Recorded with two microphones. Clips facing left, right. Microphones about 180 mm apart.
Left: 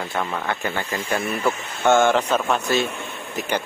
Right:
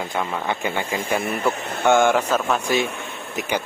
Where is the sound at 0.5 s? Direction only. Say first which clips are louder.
Right 1 dB; 20° right (ahead or behind).